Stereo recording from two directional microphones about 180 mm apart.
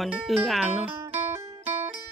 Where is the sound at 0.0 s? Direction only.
Centre (ahead or behind).